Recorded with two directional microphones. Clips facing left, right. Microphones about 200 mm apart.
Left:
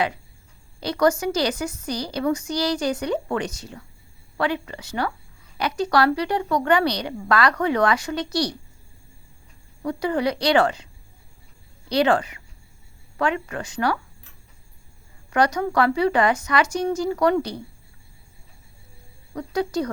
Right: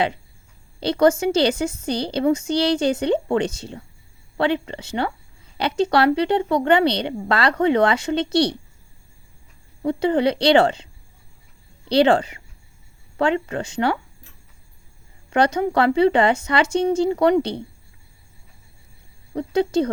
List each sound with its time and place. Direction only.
0.8 s a woman's voice: 25° right (ahead or behind)
9.8 s a woman's voice: 25° right (ahead or behind)
11.9 s a woman's voice: 30° right (ahead or behind)
15.3 s a woman's voice: 25° right (ahead or behind)
19.3 s speech: 25° right (ahead or behind)